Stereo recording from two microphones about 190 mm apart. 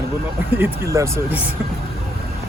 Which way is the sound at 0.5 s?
15° right (ahead or behind).